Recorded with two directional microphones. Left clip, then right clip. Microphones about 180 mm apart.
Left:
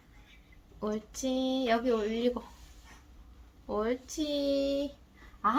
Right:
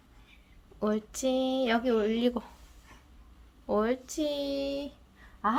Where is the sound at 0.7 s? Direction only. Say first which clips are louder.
Right 4 dB; 60° right (ahead or behind).